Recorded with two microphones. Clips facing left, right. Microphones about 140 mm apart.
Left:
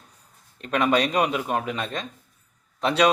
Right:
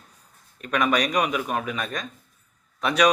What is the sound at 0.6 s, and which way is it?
Speech, 30° left (ahead or behind).